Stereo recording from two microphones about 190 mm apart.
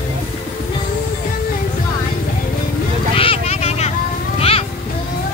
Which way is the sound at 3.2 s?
30° left (ahead or behind).